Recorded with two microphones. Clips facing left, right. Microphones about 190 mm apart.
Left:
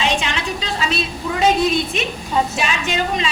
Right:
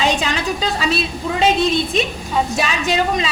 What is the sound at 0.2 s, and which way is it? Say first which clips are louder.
Speech: right 4 dB; 40° right (ahead or behind).